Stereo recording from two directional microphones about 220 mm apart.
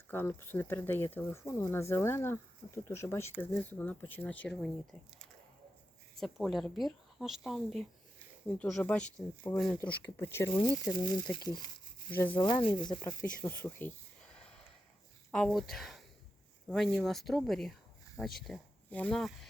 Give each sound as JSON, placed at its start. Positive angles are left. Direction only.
{"t": 0.1, "sound": "speech", "side_deg": 10}
{"t": 10.5, "sound": "speech", "side_deg": 15}
{"t": 13.4, "sound": "speech", "side_deg": 10}
{"t": 15.3, "sound": "speech", "side_deg": 0}